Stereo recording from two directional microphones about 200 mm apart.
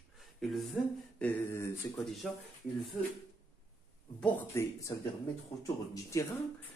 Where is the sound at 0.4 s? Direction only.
Centre (ahead or behind).